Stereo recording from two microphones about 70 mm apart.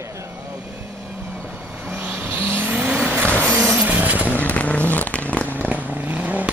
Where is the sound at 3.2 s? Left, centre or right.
Centre.